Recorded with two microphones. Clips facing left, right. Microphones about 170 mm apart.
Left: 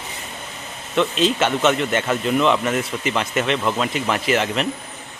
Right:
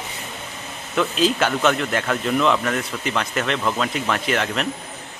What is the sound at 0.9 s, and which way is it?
Speech, centre (ahead or behind).